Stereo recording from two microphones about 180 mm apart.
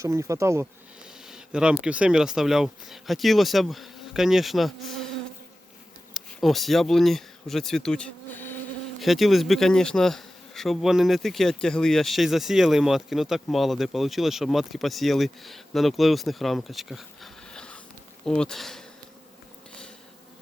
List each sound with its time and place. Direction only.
0.0 s speech: 15° right (ahead or behind)
1.0 s a sound: 5° right (ahead or behind)
1.8 s bee: 5° right (ahead or behind)
6.1 s speech: centre (ahead or behind)
9.0 s bee: centre (ahead or behind)